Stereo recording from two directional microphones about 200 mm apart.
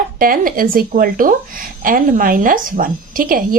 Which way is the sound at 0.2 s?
45° right (ahead or behind).